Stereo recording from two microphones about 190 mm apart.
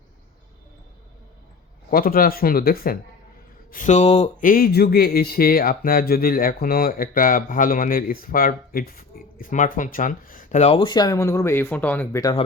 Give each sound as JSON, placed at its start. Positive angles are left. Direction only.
{"t": 1.9, "sound": "speech", "side_deg": 50}
{"t": 4.4, "sound": "speech", "side_deg": 50}